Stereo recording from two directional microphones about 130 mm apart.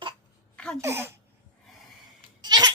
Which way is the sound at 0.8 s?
20° right (ahead or behind).